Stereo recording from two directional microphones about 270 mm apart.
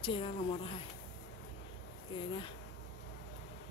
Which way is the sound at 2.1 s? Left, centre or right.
Centre.